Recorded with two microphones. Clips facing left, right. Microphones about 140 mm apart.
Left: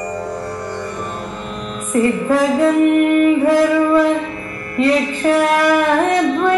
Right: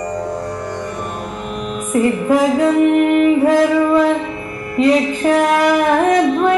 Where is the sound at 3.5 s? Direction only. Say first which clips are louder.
Even; 20° right (ahead or behind).